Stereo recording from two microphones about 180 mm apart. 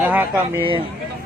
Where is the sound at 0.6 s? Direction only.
30° right (ahead or behind).